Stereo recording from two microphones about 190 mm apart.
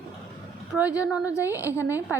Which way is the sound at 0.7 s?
10° right (ahead or behind).